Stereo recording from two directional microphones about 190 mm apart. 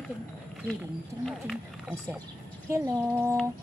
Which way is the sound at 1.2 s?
Centre (ahead or behind).